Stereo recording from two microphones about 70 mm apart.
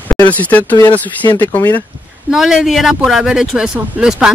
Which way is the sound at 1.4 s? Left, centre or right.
Left.